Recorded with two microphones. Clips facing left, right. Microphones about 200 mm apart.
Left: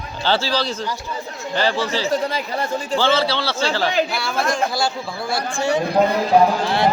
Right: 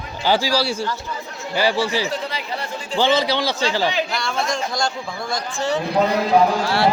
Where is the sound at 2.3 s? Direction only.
45° left (ahead or behind).